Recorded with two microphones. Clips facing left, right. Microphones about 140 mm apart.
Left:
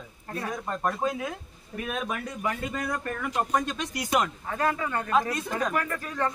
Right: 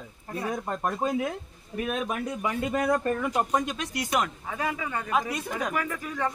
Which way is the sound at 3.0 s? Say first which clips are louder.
Right 3 dB; 15° right (ahead or behind).